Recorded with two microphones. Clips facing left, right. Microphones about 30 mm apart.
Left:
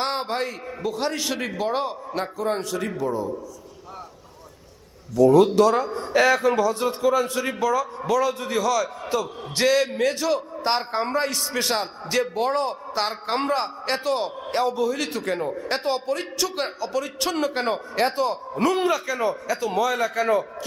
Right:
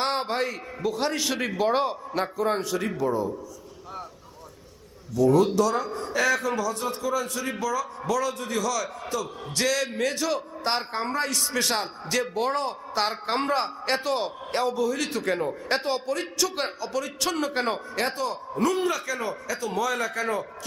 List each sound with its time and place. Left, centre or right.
0.0 s a man's voice: centre
5.3 s speech: left
5.7 s a man's voice: left
18.9 s a man's voice: centre